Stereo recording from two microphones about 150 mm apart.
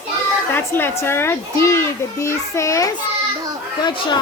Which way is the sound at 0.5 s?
15° left (ahead or behind).